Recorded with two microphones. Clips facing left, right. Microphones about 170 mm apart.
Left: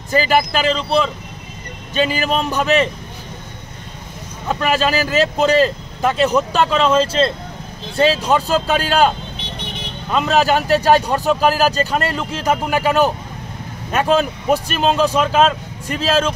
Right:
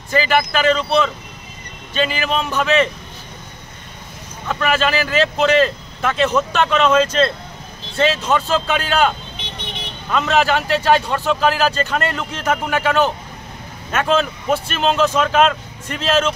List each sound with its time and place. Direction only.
0.1 s speech: 40° left (ahead or behind)
4.5 s speech: 35° left (ahead or behind)
10.1 s speech: 35° left (ahead or behind)
12.2 s speech: 10° left (ahead or behind)
13.9 s speech: 40° left (ahead or behind)
15.0 s speech: 10° left (ahead or behind)